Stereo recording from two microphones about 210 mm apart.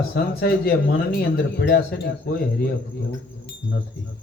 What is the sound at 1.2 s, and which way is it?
Speech, 50° left (ahead or behind).